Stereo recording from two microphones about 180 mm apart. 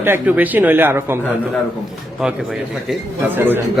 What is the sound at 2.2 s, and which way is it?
A man's voice, centre (ahead or behind).